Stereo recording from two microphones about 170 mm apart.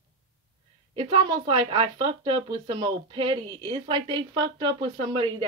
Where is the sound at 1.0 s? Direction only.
30° right (ahead or behind).